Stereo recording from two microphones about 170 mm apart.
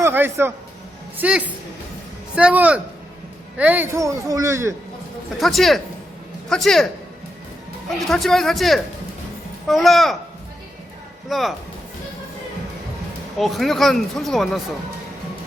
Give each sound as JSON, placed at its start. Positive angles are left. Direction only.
{"t": 0.0, "sound": "a sound", "side_deg": -15}
{"t": 1.2, "sound": "speech", "side_deg": -10}
{"t": 5.4, "sound": "speech", "side_deg": 0}
{"t": 8.0, "sound": "speech", "side_deg": 0}
{"t": 11.3, "sound": "speech", "side_deg": 0}
{"t": 13.4, "sound": "speech", "side_deg": 0}